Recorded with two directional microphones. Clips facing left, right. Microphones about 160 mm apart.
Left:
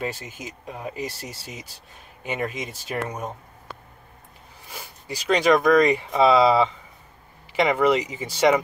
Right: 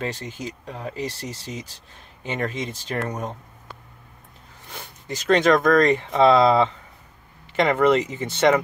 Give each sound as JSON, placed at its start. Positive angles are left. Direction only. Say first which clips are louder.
{"t": 0.0, "sound": "speech", "louder": "right 2 dB", "side_deg": 10}
{"t": 4.6, "sound": "a sound", "louder": "right 1 dB", "side_deg": 5}
{"t": 5.2, "sound": "speech", "louder": "right 1 dB", "side_deg": 5}